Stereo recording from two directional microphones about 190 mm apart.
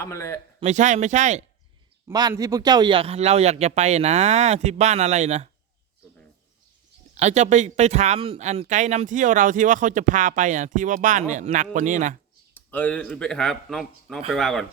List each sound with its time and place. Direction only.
0.0 s a man's voice: 15° left (ahead or behind)
0.6 s speech: 40° right (ahead or behind)
2.0 s speech: 15° right (ahead or behind); by 5.5 s 35° right (ahead or behind)
7.2 s speech: 35° right (ahead or behind)
12.5 s speech: 10° left (ahead or behind)